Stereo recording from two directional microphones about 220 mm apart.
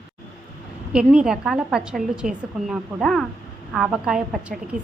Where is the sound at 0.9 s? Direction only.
5° right (ahead or behind).